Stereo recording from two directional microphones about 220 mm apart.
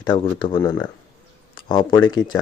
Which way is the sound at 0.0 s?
20° left (ahead or behind).